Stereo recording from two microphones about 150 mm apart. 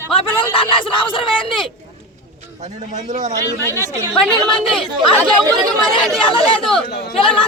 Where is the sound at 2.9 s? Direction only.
55° right (ahead or behind).